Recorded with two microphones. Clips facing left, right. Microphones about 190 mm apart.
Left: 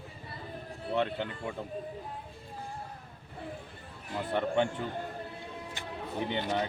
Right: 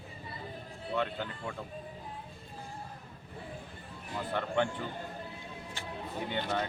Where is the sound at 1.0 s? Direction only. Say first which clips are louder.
Left 3 dB; 20° left (ahead or behind).